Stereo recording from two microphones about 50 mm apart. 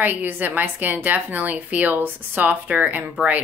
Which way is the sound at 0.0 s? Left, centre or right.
Right.